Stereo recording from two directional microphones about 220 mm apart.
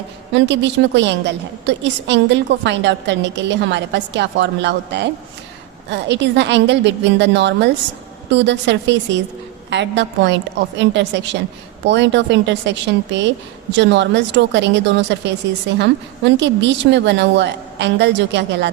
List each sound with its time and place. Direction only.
0.3 s a woman's voice: 55° right (ahead or behind)